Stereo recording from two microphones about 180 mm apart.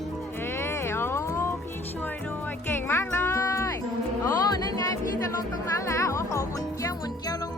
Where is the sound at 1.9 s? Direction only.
10° left (ahead or behind).